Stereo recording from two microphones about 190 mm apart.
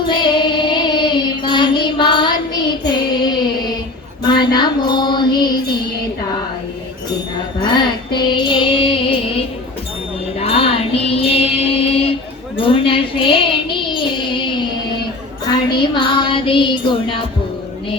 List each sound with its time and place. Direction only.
0.1 s music: 25° left (ahead or behind)
7.6 s music: 25° left (ahead or behind)
10.4 s music: 30° left (ahead or behind)
12.6 s a sound: 30° left (ahead or behind)
15.8 s music: 25° left (ahead or behind)